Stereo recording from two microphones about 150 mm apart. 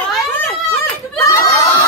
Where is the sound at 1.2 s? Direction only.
20° left (ahead or behind).